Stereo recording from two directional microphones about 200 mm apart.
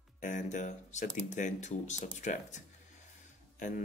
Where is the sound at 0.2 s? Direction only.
40° left (ahead or behind).